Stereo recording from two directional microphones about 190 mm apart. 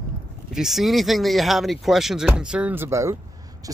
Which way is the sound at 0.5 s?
Centre (ahead or behind).